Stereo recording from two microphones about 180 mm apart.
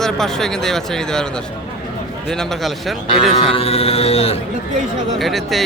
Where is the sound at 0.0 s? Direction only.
5° left (ahead or behind).